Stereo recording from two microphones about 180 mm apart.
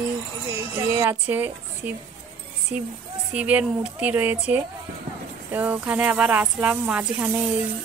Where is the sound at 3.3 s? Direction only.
5° right (ahead or behind).